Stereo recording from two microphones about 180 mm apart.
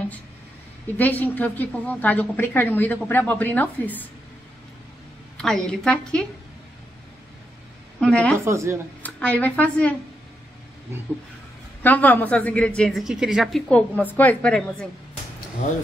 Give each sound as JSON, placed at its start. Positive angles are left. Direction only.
{"t": 0.9, "sound": "a woman's voice", "side_deg": 10}
{"t": 5.7, "sound": "a woman's voice", "side_deg": 5}
{"t": 8.0, "sound": "a woman's voice", "side_deg": 5}
{"t": 8.5, "sound": "speech", "side_deg": -15}
{"t": 9.0, "sound": "speech", "side_deg": 10}
{"t": 10.9, "sound": "speech", "side_deg": -15}
{"t": 11.8, "sound": "a woman's voice", "side_deg": 10}